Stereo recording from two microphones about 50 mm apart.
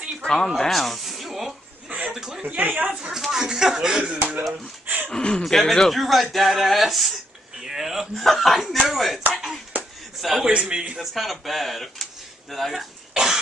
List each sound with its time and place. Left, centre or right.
0.2 s speech: centre
2.0 s chuckle: centre
2.4 s a woman's voice: right
2.9 s speech: centre
4.0 s speech: right
4.8 s a sound: right
5.1 s speech: centre
5.4 s speech: centre
7.6 s a sound: centre
8.2 s speech: centre
9.3 s a sound: centre
10.4 s speech: centre
11.0 s speech: centre
13.1 s cough: centre